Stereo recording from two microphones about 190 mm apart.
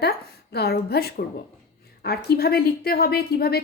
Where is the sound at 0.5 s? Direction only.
55° left (ahead or behind).